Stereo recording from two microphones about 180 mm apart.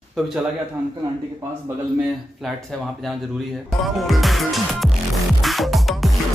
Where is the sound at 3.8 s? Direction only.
Centre (ahead or behind).